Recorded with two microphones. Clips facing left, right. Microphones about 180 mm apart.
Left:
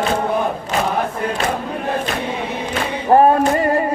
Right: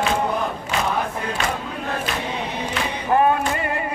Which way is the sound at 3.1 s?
40° left (ahead or behind).